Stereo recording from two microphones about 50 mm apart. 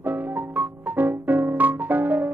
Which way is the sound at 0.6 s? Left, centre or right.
Right.